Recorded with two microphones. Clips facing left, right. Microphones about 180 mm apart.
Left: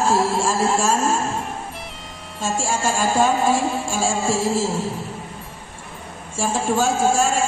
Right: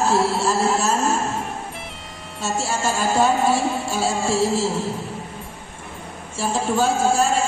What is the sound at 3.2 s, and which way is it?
A woman's voice, 45° left (ahead or behind).